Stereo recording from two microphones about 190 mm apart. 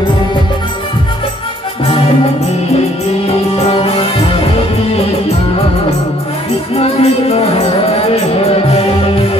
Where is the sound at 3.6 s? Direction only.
30° left (ahead or behind).